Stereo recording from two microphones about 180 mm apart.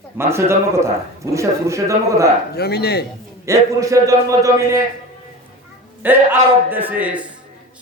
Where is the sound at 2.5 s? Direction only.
60° left (ahead or behind).